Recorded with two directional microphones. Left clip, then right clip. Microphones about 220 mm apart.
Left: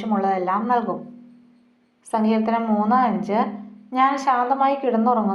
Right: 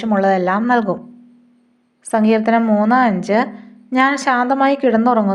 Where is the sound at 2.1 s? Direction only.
50° right (ahead or behind).